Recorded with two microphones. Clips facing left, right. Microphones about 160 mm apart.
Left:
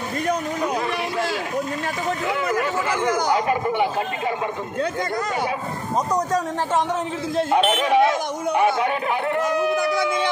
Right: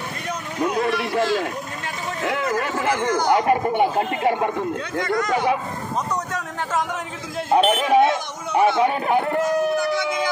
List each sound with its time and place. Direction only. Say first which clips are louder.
2.8 s speech: right 1 dB; 55° right (ahead or behind)
6.1 s speech: left 5 dB; 35° left (ahead or behind)
7.5 s speech: right 3 dB; 40° right (ahead or behind)